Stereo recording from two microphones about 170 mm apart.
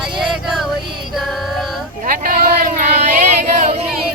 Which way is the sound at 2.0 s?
55° right (ahead or behind).